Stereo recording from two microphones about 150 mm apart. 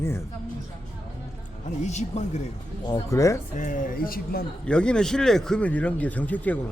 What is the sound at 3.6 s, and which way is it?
Speech, 60° left (ahead or behind).